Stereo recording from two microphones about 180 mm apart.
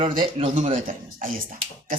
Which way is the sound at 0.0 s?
30° right (ahead or behind).